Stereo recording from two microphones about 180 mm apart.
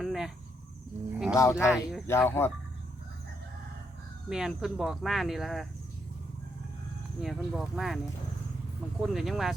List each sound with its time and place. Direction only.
0.0 s cricket: centre (ahead or behind)
1.1 s speech: 5° right (ahead or behind)
1.4 s speech: 15° left (ahead or behind)
1.7 s speech: centre (ahead or behind)
2.0 s speech: 15° left (ahead or behind)
4.3 s speech: 5° right (ahead or behind)
7.2 s speech: centre (ahead or behind)
9.0 s speech: centre (ahead or behind)